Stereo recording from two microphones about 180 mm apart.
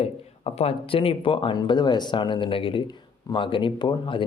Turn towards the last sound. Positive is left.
turn(degrees=25)  # may be behind; listen again after turning